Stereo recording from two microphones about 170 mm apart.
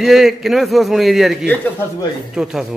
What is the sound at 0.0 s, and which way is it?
A man's voice, centre (ahead or behind).